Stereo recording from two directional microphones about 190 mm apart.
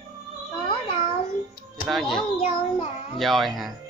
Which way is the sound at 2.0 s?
25° left (ahead or behind).